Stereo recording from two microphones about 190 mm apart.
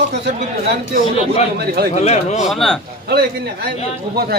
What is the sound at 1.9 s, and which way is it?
Speech, 35° left (ahead or behind).